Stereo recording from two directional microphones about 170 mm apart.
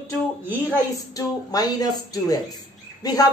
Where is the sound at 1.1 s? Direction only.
20° left (ahead or behind).